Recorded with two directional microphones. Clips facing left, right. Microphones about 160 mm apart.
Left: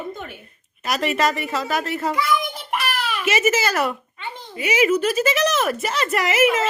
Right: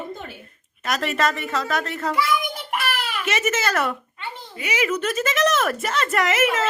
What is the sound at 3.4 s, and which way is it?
Speech, 5° left (ahead or behind).